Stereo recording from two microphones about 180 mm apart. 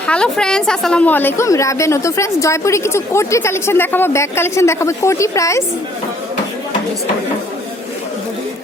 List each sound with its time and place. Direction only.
0.0 s a woman's voice: 5° left (ahead or behind)